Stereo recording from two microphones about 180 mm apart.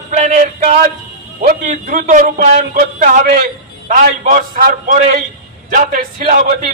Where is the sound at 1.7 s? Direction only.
45° right (ahead or behind).